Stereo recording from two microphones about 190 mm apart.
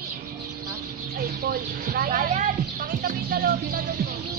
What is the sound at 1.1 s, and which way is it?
Speech, 50° right (ahead or behind).